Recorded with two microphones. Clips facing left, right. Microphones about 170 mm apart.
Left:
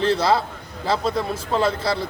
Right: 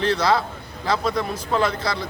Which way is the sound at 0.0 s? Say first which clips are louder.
Left 1 dB; 30° left (ahead or behind).